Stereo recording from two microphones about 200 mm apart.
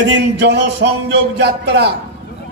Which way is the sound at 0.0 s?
60° right (ahead or behind).